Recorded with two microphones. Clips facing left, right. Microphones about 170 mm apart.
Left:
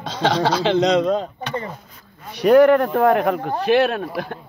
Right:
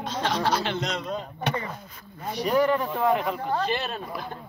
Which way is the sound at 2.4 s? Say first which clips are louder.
Left 10 dB; 70° left (ahead or behind).